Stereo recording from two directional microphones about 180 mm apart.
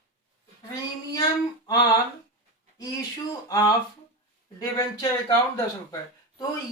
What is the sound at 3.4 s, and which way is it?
Speech, 20° left (ahead or behind).